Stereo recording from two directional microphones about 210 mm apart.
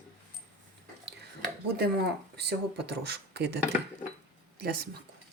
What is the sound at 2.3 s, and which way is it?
Speech, 50° right (ahead or behind).